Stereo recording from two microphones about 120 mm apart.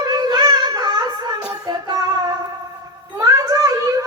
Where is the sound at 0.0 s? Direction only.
35° right (ahead or behind).